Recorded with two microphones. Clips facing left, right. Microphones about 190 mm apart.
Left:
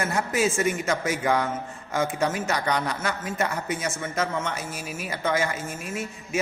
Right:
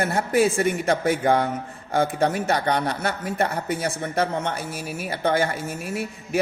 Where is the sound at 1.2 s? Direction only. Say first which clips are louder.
Right 3 dB; 35° right (ahead or behind).